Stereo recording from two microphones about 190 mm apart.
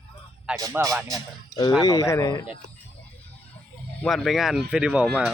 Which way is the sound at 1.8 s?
20° left (ahead or behind).